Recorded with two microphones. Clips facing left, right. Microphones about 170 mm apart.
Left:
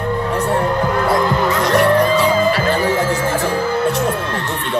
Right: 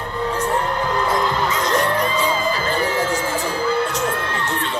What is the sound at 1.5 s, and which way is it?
Music, 65° left (ahead or behind).